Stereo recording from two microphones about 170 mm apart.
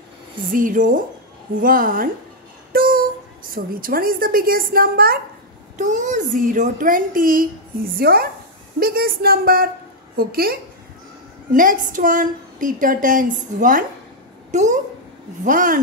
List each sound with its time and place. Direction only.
0.5 s a woman's voice: 55° right (ahead or behind)
5.8 s a woman's voice: 50° right (ahead or behind)